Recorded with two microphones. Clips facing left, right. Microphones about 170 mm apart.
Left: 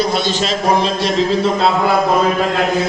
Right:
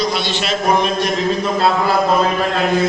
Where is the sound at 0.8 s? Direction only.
30° left (ahead or behind).